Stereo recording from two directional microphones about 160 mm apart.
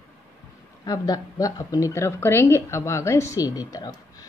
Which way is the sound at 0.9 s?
20° left (ahead or behind).